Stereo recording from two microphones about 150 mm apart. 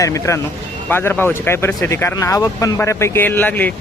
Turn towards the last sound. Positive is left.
turn(degrees=10)  # may be behind; listen again after turning